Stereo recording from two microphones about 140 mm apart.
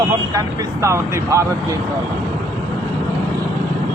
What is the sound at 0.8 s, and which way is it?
Speech, 20° right (ahead or behind).